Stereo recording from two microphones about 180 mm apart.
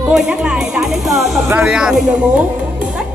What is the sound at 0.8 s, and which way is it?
Speech, centre (ahead or behind).